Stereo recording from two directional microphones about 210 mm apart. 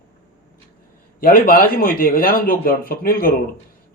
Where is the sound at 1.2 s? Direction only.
45° left (ahead or behind).